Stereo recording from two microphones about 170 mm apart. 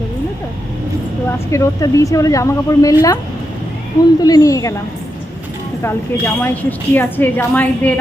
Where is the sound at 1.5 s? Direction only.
15° left (ahead or behind).